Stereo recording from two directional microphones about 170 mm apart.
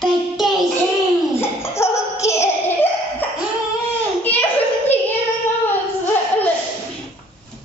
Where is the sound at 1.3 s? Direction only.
15° left (ahead or behind).